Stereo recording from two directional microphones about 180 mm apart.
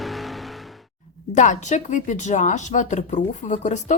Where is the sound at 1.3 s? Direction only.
40° left (ahead or behind).